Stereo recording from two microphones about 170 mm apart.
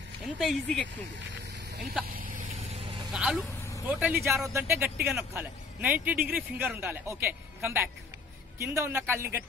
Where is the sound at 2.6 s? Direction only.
35° right (ahead or behind).